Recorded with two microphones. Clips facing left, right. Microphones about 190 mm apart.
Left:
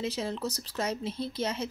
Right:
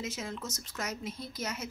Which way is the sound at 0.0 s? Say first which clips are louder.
Left 6 dB; 30° left (ahead or behind).